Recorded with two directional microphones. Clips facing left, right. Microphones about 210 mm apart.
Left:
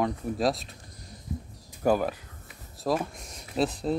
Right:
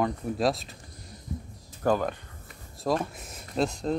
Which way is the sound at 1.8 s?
10° left (ahead or behind).